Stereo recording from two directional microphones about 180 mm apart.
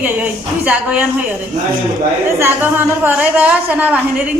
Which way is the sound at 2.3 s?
10° right (ahead or behind).